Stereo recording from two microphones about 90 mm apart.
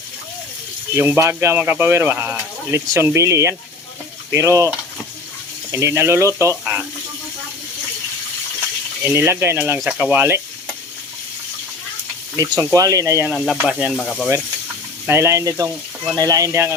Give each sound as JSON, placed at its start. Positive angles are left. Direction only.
{"t": 0.9, "sound": "speech", "side_deg": -30}
{"t": 5.7, "sound": "speech", "side_deg": -30}
{"t": 9.0, "sound": "speech", "side_deg": -30}
{"t": 12.4, "sound": "speech", "side_deg": -40}
{"t": 13.3, "sound": "speech", "side_deg": 0}
{"t": 13.7, "sound": "sizzle", "side_deg": -10}
{"t": 13.9, "sound": "sizzle", "side_deg": 5}
{"t": 15.0, "sound": "speech", "side_deg": -30}